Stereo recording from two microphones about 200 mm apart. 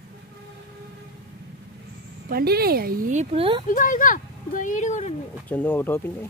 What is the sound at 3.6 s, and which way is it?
Speech, 40° left (ahead or behind).